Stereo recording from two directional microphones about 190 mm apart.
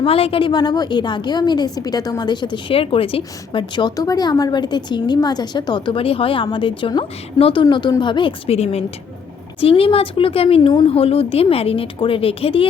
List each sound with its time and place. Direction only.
0.0 s a woman's voice: 30° left (ahead or behind)